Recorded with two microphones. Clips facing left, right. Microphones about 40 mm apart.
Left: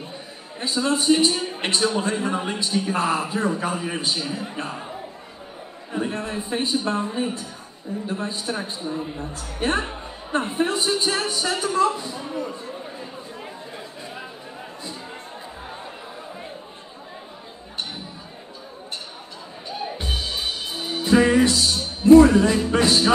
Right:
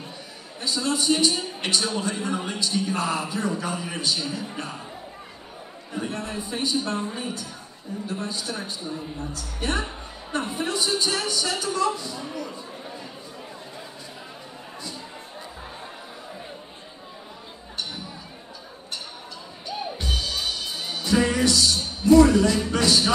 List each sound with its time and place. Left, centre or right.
0.6 s a woman's voice: left
8.1 s a woman's voice: centre
20.0 s music: left